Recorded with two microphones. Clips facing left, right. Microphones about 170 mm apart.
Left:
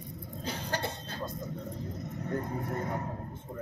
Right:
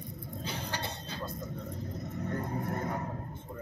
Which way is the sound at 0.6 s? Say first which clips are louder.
Left 3 dB; 45° left (ahead or behind).